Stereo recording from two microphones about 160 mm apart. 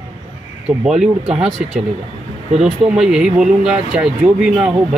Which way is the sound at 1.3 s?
5° right (ahead or behind).